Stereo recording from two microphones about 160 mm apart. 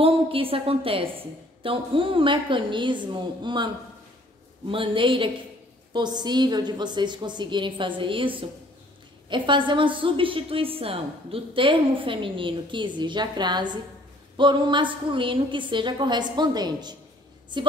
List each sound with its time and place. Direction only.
0.0 s a woman's voice: 35° right (ahead or behind)